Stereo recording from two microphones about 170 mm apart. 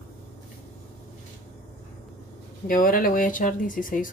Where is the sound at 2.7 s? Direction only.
55° left (ahead or behind).